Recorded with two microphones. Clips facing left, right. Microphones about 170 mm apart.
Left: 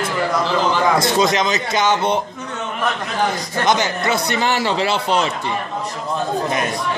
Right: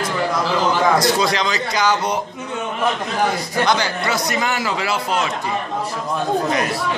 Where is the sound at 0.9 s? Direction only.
25° left (ahead or behind).